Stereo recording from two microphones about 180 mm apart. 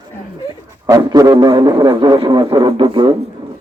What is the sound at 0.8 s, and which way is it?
A man's voice, 20° right (ahead or behind).